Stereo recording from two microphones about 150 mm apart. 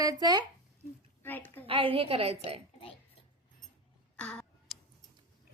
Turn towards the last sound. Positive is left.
turn(degrees=5)  # may be behind; listen again after turning